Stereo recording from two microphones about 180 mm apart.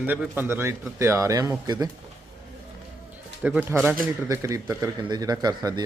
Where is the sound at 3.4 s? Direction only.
10° right (ahead or behind).